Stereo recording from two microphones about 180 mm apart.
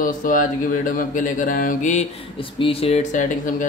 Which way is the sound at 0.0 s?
50° left (ahead or behind).